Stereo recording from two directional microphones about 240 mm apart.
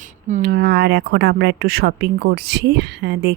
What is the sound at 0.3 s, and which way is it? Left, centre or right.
Speech, right.